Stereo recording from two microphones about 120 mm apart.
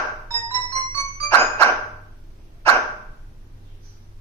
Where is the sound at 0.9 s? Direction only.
20° left (ahead or behind).